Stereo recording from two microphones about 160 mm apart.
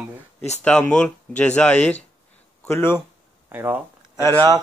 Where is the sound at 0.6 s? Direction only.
10° left (ahead or behind).